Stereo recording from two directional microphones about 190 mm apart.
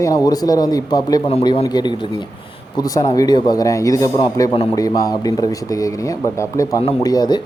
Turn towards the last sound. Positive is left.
turn(degrees=20)  # may be behind; listen again after turning